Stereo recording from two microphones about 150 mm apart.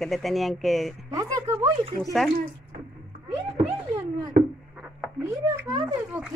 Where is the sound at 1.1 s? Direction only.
25° right (ahead or behind).